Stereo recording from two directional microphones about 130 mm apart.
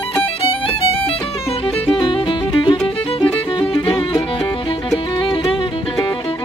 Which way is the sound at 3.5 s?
35° left (ahead or behind).